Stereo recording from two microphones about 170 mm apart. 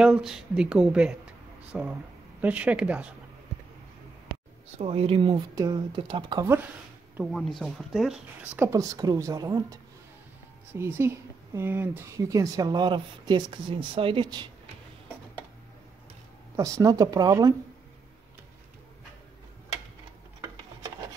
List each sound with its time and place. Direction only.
0.0 s a woman's voice: 5° right (ahead or behind)
4.7 s speech: 35° right (ahead or behind)
5.5 s speech: 20° right (ahead or behind)
7.2 s speech: centre (ahead or behind)
8.6 s speech: 20° right (ahead or behind)
16.5 s speech: 20° right (ahead or behind)